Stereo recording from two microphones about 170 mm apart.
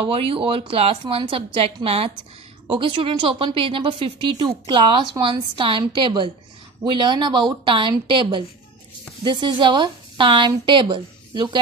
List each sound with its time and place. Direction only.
0.0 s a woman's voice: 35° right (ahead or behind)